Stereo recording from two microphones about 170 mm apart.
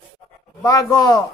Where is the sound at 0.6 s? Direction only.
20° left (ahead or behind).